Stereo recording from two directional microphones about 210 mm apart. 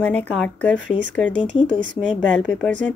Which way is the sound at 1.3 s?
25° left (ahead or behind).